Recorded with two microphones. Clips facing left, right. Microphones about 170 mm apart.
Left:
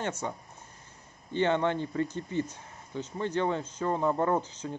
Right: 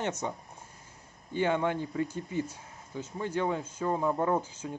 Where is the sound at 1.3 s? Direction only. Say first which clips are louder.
Left 1 dB; 10° right (ahead or behind).